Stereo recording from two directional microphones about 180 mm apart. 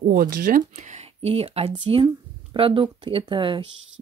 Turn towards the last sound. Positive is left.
turn(degrees=-25)  # may be behind; listen again after turning